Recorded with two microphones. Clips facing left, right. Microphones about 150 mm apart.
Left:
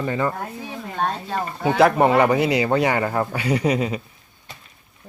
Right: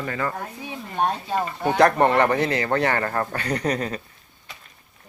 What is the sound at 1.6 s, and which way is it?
Speech, 5° left (ahead or behind).